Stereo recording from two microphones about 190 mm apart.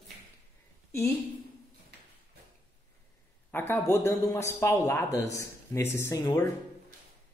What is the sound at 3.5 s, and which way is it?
Speech, 10° left (ahead or behind).